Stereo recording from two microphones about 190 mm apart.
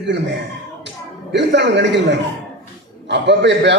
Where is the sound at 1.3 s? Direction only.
65° right (ahead or behind).